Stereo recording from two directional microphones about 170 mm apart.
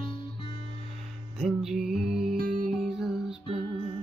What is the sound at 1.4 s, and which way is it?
Music, centre (ahead or behind).